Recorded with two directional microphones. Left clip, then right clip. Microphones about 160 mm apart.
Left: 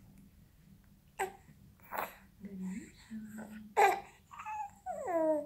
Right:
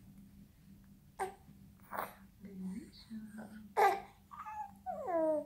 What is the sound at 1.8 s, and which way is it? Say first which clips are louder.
Sneeze: left 2 dB; 20° left (ahead or behind).